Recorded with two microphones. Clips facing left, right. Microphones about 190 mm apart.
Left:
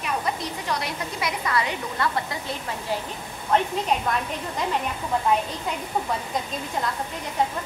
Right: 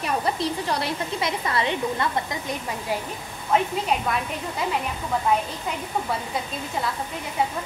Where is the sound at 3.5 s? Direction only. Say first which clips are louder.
Even; 5° right (ahead or behind).